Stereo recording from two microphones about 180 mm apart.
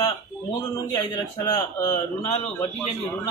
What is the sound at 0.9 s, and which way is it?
Speech, 25° left (ahead or behind).